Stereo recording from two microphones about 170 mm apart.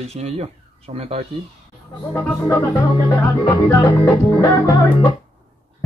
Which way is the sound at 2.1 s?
15° left (ahead or behind).